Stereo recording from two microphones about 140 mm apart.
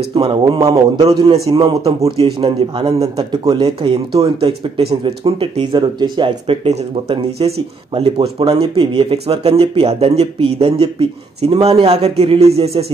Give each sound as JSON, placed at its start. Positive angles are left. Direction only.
{"t": 0.1, "sound": "speech", "side_deg": -40}
{"t": 1.4, "sound": "a man's voice", "side_deg": -30}
{"t": 2.0, "sound": "speech", "side_deg": -40}
{"t": 2.8, "sound": "speech", "side_deg": -30}